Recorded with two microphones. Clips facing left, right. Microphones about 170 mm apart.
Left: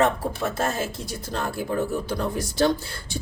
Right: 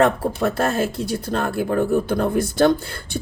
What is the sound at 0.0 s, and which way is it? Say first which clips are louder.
Speech: right 5 dB; 60° right (ahead or behind).